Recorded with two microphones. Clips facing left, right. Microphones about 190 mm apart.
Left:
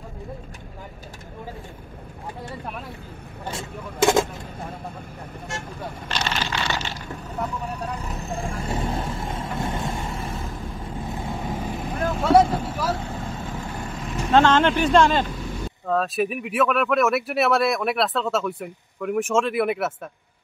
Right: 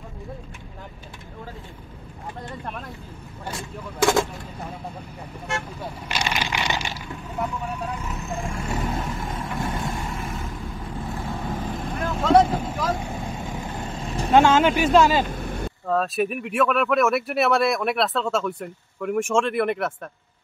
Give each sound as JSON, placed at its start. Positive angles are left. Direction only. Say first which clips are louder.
{"t": 3.4, "sound": "speech", "louder": "left 1 dB", "side_deg": 20}
{"t": 5.5, "sound": "speech", "louder": "right 5 dB", "side_deg": -60}
{"t": 6.0, "sound": "speech", "louder": "right 1 dB", "side_deg": -10}
{"t": 7.4, "sound": "vehicle", "louder": "even", "side_deg": 35}
{"t": 11.0, "sound": "vehicle", "louder": "even", "side_deg": 20}
{"t": 12.9, "sound": "vehicle", "louder": "right 1 dB", "side_deg": -15}
{"t": 14.3, "sound": "speech", "louder": "right 1 dB", "side_deg": -10}
{"t": 15.3, "sound": "vehicle", "louder": "right 1 dB", "side_deg": -55}
{"t": 15.9, "sound": "speech", "louder": "even", "side_deg": 0}